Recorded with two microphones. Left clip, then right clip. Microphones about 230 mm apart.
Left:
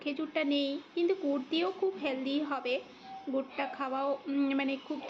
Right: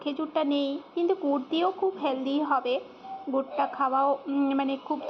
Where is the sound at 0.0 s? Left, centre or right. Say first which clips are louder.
Right 5 dB; centre.